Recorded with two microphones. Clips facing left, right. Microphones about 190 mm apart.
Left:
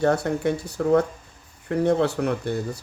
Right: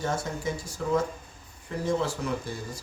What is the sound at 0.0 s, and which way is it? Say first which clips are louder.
Speech: left 9 dB; 65° left (ahead or behind).